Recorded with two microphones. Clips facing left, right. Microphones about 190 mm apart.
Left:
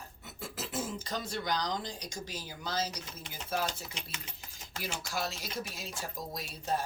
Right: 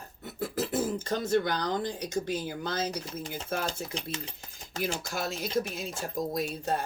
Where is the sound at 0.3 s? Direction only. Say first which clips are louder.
Right 11 dB; 55° right (ahead or behind).